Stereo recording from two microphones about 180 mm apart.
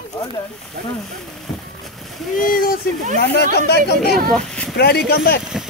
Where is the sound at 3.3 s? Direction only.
65° left (ahead or behind).